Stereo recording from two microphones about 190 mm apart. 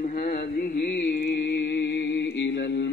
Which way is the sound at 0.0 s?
50° left (ahead or behind).